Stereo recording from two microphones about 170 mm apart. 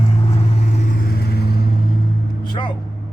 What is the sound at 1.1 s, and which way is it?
Vehicle, 65° left (ahead or behind).